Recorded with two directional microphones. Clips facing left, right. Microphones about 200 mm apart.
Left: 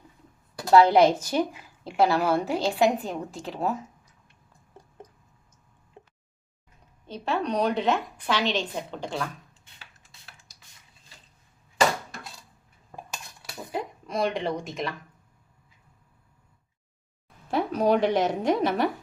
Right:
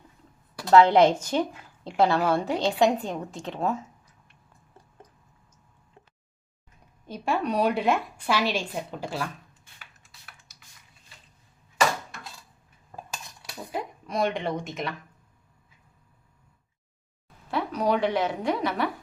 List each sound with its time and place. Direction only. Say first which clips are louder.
0.7 s a woman's voice: even; 10° left (ahead or behind)
6.0 s a sound: left 5 dB; 25° left (ahead or behind)
7.1 s a woman's voice: right 1 dB; 10° right (ahead or behind)
13.7 s a woman's voice: left 1 dB; centre (ahead or behind)
17.5 s a woman's voice: left 3 dB; 45° left (ahead or behind)